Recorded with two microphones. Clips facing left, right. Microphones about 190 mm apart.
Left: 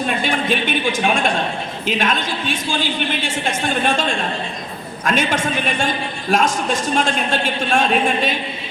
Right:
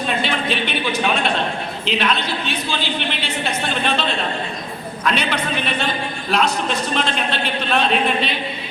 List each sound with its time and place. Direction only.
0.2 s a woman's voice: 50° left (ahead or behind)